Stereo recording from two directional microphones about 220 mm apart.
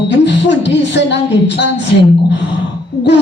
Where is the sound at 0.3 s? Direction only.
55° left (ahead or behind).